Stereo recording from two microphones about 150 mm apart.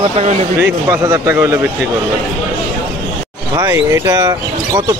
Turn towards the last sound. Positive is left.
turn(degrees=-25)  # may be behind; listen again after turning